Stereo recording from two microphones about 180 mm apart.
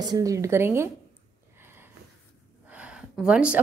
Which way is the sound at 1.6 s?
15° right (ahead or behind).